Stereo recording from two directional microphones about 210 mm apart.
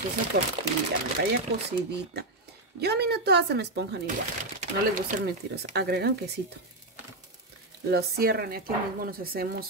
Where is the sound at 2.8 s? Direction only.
50° right (ahead or behind).